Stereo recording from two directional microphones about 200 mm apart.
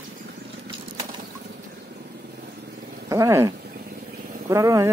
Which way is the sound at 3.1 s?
15° right (ahead or behind).